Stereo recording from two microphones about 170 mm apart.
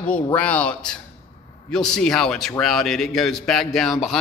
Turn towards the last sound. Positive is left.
turn(degrees=0)  # may be behind; listen again after turning